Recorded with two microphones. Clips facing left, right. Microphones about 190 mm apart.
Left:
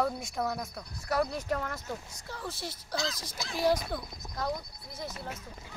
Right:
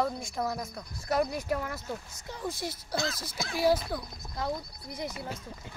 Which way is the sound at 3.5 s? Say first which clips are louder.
Right 2 dB; 5° right (ahead or behind).